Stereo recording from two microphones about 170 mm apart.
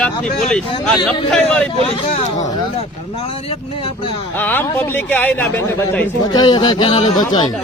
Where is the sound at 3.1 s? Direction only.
35° left (ahead or behind).